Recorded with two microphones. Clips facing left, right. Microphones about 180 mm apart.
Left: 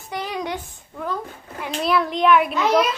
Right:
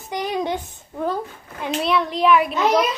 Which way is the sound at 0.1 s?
20° right (ahead or behind).